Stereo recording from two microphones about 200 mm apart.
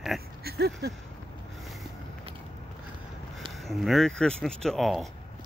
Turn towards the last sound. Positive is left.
turn(degrees=0)  # may be behind; listen again after turning